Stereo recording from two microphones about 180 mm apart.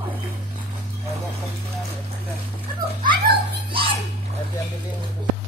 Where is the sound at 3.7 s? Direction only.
30° right (ahead or behind).